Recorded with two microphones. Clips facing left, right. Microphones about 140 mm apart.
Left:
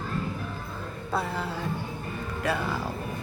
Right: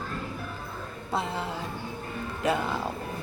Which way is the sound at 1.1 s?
20° right (ahead or behind).